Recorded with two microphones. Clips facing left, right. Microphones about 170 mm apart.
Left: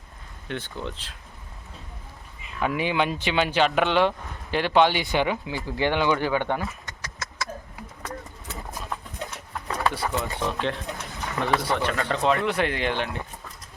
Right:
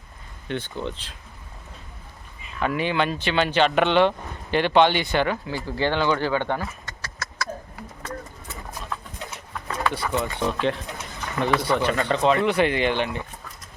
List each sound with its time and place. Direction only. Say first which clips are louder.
0.4 s speech: right 3 dB; centre (ahead or behind)
2.6 s speech: right 1 dB; 10° left (ahead or behind)
6.8 s a sound: right 1 dB; 20° left (ahead or behind)
9.9 s speech: right 2 dB; centre (ahead or behind)
11.0 s a sound: right 3 dB; centre (ahead or behind)
11.6 s speech: right 3 dB; centre (ahead or behind)